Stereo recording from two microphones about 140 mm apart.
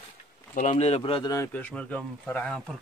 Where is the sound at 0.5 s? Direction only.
55° left (ahead or behind); by 1.3 s 40° left (ahead or behind).